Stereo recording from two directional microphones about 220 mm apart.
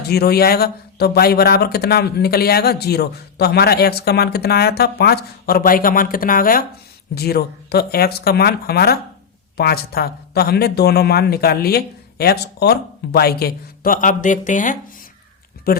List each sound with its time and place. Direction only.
0.1 s a man's voice: 45° left (ahead or behind)